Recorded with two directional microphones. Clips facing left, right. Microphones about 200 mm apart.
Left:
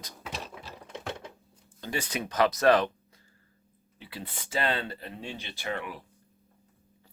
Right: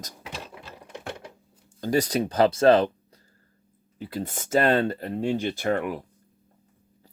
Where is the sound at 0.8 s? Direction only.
10° right (ahead or behind).